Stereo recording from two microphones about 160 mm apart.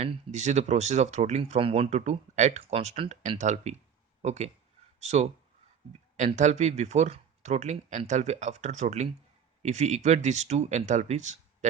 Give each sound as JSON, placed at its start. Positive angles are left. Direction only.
{"t": 0.0, "sound": "speech", "side_deg": -45}